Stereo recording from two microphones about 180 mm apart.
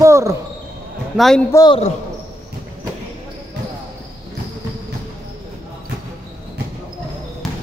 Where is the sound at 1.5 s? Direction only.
20° left (ahead or behind).